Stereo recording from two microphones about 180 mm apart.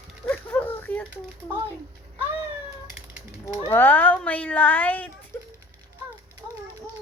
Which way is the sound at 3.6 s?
10° left (ahead or behind).